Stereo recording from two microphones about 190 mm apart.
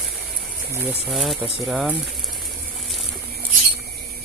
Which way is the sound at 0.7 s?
5° right (ahead or behind).